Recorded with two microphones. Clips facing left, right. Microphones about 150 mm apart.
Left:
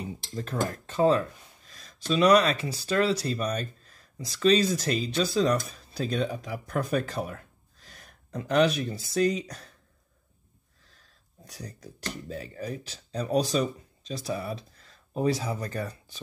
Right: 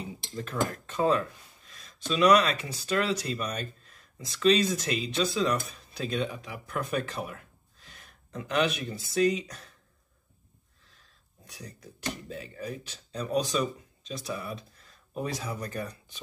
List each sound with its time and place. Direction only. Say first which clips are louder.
0.4 s speech: left 1 dB; 35° left (ahead or behind)
11.0 s speech: left 5 dB; 40° left (ahead or behind)